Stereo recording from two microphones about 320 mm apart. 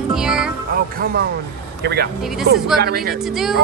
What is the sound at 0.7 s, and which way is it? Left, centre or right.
A man's voice, right.